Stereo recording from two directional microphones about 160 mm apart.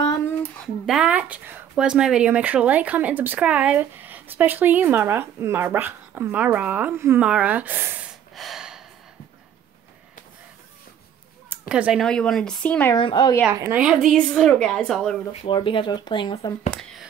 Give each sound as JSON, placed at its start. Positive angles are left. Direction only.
{"t": 0.8, "sound": "speech", "side_deg": -5}
{"t": 8.4, "sound": "gasp", "side_deg": 0}
{"t": 11.7, "sound": "speech", "side_deg": -5}
{"t": 12.9, "sound": "speech", "side_deg": 30}
{"t": 13.5, "sound": "speech", "side_deg": -15}
{"t": 14.1, "sound": "speech", "side_deg": 5}
{"t": 15.4, "sound": "speech", "side_deg": 30}